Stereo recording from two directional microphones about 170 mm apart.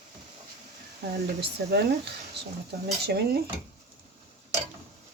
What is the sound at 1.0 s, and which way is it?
Speech, 70° right (ahead or behind).